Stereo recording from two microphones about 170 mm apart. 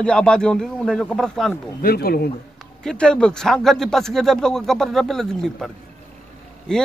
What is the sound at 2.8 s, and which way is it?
A man's voice, 5° left (ahead or behind).